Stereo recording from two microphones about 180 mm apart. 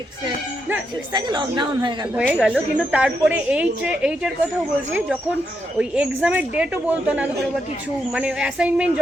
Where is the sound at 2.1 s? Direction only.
10° right (ahead or behind).